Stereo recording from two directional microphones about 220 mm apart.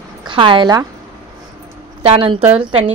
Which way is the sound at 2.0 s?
25° right (ahead or behind).